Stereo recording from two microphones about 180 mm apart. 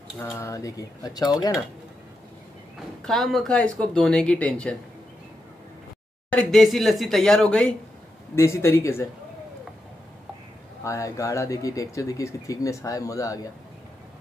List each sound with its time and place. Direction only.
0.2 s speech: 15° left (ahead or behind)
3.0 s speech: centre (ahead or behind)
6.3 s speech: centre (ahead or behind)
8.4 s speech: 15° left (ahead or behind)
10.8 s speech: 15° left (ahead or behind)